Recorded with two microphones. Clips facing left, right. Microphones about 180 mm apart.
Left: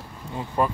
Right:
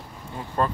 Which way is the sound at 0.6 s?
10° left (ahead or behind).